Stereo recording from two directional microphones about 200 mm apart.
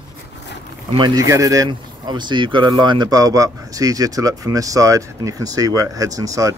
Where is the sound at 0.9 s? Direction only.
20° right (ahead or behind).